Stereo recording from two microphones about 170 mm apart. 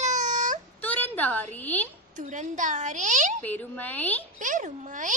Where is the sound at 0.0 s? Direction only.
45° right (ahead or behind).